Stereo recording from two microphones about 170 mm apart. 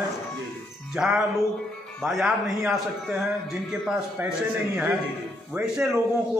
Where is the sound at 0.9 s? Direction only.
5° right (ahead or behind).